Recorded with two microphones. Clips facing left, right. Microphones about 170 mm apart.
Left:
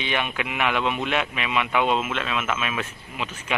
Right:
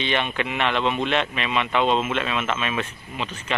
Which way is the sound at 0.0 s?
10° left (ahead or behind).